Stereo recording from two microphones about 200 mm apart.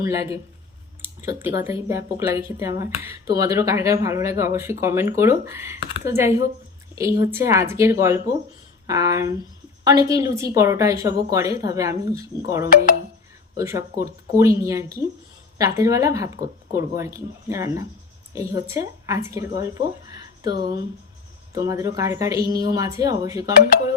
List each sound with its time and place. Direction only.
0.0 s speech: 15° right (ahead or behind)
21.5 s speech: 15° right (ahead or behind)